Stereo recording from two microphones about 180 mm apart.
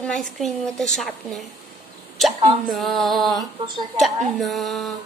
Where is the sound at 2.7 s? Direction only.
Centre (ahead or behind).